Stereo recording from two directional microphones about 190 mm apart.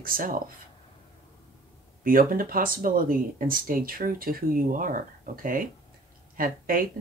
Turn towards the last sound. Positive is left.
turn(degrees=-50)  # may be behind; listen again after turning